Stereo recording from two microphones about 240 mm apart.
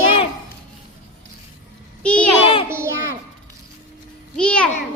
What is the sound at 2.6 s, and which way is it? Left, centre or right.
Speech, centre.